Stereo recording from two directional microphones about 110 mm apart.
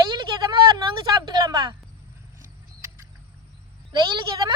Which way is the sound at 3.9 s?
45° right (ahead or behind).